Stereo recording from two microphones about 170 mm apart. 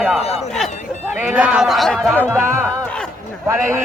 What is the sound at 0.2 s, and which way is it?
Speech, 40° left (ahead or behind).